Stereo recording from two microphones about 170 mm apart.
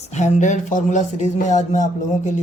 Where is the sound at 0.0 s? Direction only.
45° left (ahead or behind).